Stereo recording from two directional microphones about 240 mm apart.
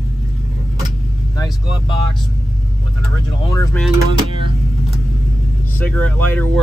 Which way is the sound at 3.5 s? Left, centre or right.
Centre.